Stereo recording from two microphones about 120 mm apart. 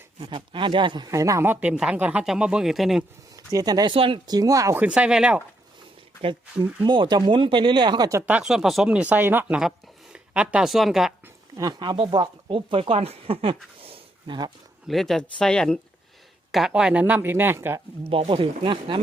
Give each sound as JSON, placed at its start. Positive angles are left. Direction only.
{"t": 0.3, "sound": "speech", "side_deg": -45}
{"t": 1.6, "sound": "speech", "side_deg": -5}
{"t": 3.3, "sound": "speech", "side_deg": -30}
{"t": 3.9, "sound": "speech", "side_deg": -50}
{"t": 4.3, "sound": "speech", "side_deg": -30}
{"t": 4.8, "sound": "speech", "side_deg": -10}
{"t": 6.8, "sound": "speech", "side_deg": -40}
{"t": 8.3, "sound": "speech", "side_deg": -5}
{"t": 9.6, "sound": "speech", "side_deg": -5}
{"t": 11.5, "sound": "speech", "side_deg": -35}
{"t": 13.8, "sound": "a sound", "side_deg": -50}
{"t": 14.8, "sound": "speech", "side_deg": 0}
{"t": 18.1, "sound": "speech", "side_deg": -50}